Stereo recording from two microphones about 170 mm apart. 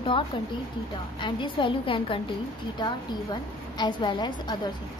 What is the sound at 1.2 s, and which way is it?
A woman's voice, 30° left (ahead or behind).